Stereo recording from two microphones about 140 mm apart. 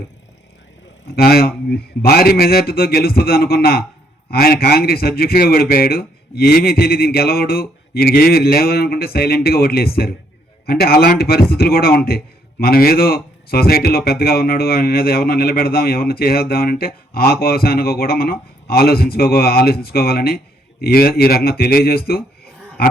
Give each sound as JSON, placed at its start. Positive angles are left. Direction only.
{"t": 1.1, "sound": "a man's voice", "side_deg": 90}
{"t": 22.8, "sound": "dog", "side_deg": 90}